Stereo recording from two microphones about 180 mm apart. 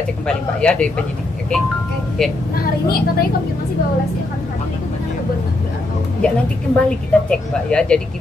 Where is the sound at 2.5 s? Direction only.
55° left (ahead or behind).